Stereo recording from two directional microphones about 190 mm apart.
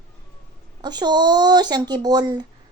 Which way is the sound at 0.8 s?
20° right (ahead or behind).